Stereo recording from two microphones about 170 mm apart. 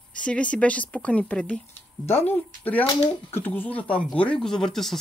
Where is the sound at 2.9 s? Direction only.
35° left (ahead or behind).